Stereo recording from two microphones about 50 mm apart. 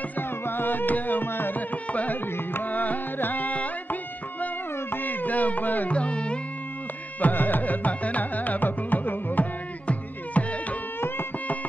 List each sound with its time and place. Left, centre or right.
0.2 s music: left
1.9 s music: left
2.3 s carnatic music: left
2.7 s music: left
5.9 s music: left
7.2 s music: left